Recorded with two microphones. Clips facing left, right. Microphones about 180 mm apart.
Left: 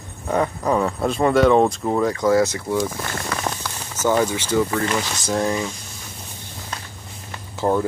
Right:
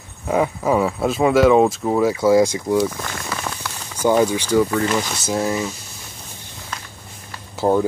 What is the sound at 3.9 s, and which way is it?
Speech, 15° right (ahead or behind).